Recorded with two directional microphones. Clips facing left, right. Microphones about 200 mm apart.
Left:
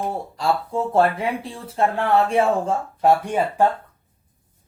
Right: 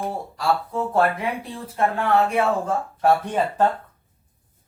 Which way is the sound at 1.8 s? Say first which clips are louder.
Left 1 dB; 30° left (ahead or behind).